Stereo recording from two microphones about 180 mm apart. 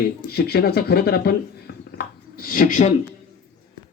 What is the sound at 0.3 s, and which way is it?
Speech, 60° left (ahead or behind).